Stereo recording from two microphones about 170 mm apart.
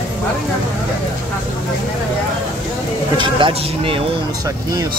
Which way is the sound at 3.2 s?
30° right (ahead or behind).